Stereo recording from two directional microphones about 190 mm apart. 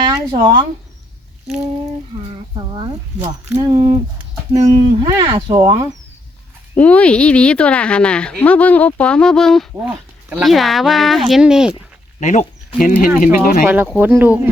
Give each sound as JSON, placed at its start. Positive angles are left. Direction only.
{"t": 0.1, "sound": "speech", "side_deg": -15}
{"t": 2.6, "sound": "speech", "side_deg": -25}
{"t": 6.7, "sound": "a woman's voice", "side_deg": 5}
{"t": 12.2, "sound": "speech", "side_deg": 40}
{"t": 13.7, "sound": "speech", "side_deg": -10}